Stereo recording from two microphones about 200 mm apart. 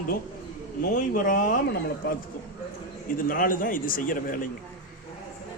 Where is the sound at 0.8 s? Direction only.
45° left (ahead or behind).